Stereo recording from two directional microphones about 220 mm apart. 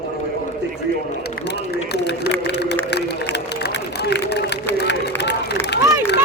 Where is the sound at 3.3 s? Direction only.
50° left (ahead or behind).